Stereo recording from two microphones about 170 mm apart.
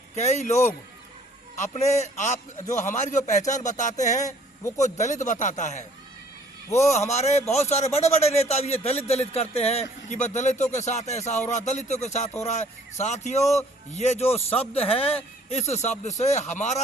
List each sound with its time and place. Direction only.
0.2 s speech: 45° left (ahead or behind)
7.1 s a man's voice: 40° left (ahead or behind)